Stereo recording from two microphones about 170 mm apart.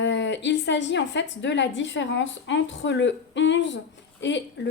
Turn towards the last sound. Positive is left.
turn(degrees=90)